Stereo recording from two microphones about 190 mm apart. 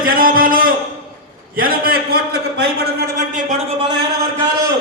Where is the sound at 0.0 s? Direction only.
50° right (ahead or behind).